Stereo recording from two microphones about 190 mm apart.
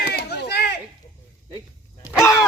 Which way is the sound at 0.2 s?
60° left (ahead or behind).